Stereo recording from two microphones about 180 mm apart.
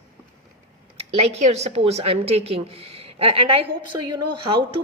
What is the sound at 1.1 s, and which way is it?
A woman's voice, 35° right (ahead or behind).